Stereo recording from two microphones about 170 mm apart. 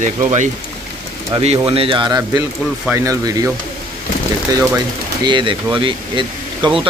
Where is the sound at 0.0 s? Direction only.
45° right (ahead or behind).